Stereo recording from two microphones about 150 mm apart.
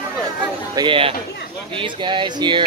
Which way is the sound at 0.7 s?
35° right (ahead or behind).